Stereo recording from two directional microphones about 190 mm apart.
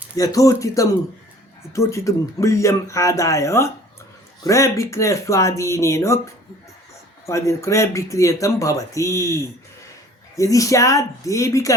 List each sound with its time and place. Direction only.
0.2 s speech: 20° left (ahead or behind)
7.3 s speech: 15° left (ahead or behind)